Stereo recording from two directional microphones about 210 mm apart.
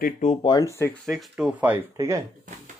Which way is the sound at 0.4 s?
15° left (ahead or behind).